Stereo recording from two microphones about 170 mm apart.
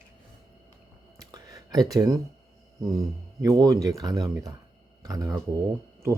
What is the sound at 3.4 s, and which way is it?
Speech, 20° right (ahead or behind).